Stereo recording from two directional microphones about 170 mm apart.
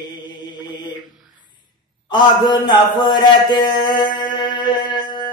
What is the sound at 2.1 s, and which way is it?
A man's voice, 25° left (ahead or behind).